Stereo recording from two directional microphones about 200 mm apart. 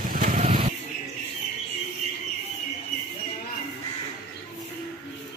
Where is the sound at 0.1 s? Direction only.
40° right (ahead or behind).